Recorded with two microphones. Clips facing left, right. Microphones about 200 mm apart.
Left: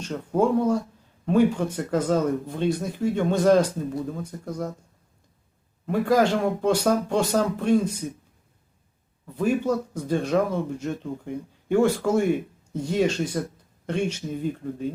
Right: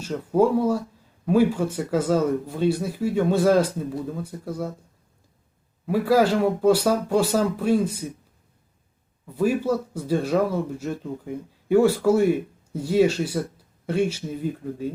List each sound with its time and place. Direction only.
0.0 s speech: 5° right (ahead or behind)
5.8 s speech: 5° right (ahead or behind)
9.3 s speech: 5° right (ahead or behind)